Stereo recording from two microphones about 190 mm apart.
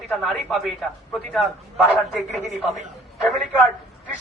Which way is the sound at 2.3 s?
40° right (ahead or behind).